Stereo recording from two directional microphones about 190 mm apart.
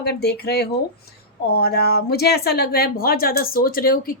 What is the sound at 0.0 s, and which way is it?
Speech, 60° left (ahead or behind).